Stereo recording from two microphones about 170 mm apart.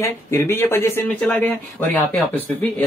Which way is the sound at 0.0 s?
15° left (ahead or behind).